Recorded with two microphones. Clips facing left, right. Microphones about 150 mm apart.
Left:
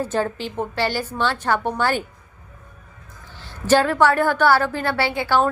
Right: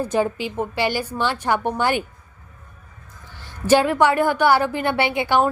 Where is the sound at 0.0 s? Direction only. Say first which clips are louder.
Right 2 dB; 15° right (ahead or behind).